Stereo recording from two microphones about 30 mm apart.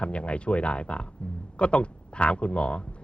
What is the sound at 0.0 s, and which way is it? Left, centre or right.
A man's voice, left.